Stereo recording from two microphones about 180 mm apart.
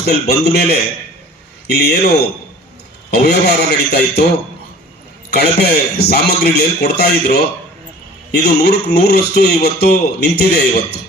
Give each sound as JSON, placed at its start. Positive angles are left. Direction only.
{"t": 0.0, "sound": "speech", "side_deg": 65}
{"t": 5.3, "sound": "speech", "side_deg": 65}